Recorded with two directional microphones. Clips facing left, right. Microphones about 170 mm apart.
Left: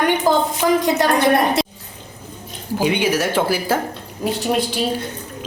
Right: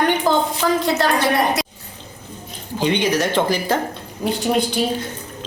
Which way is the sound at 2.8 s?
10° left (ahead or behind).